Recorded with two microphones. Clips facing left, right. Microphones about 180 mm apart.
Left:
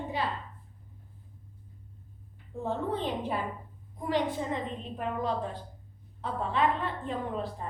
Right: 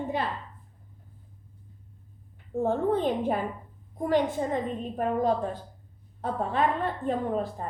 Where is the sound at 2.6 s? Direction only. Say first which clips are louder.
Right 7 dB; 50° right (ahead or behind).